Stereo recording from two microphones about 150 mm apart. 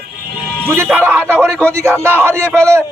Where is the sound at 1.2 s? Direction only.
5° left (ahead or behind).